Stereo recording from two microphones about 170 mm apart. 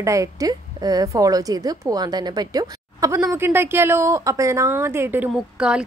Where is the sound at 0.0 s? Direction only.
20° right (ahead or behind).